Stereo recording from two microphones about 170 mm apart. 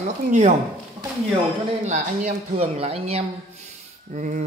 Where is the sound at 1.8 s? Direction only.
40° right (ahead or behind).